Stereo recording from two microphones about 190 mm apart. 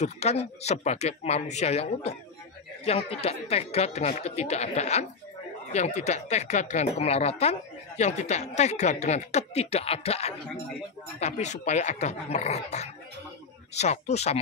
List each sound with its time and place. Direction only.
0.0 s a woman's voice: 35° left (ahead or behind)